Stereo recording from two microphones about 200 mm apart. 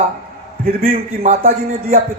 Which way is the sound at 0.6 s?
45° right (ahead or behind).